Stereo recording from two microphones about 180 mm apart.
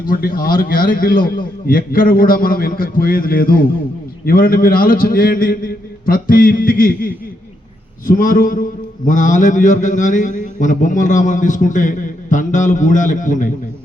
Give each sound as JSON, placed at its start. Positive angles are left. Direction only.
{"t": 0.1, "sound": "a man's voice", "side_deg": 55}